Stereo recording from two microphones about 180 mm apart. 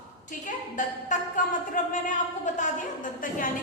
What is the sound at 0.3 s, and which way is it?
A woman's voice, 45° left (ahead or behind).